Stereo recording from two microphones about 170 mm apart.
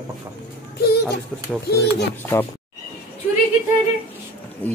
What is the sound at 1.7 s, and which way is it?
Speech, 75° left (ahead or behind).